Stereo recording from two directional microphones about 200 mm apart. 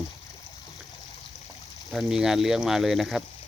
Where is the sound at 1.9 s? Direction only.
5° right (ahead or behind).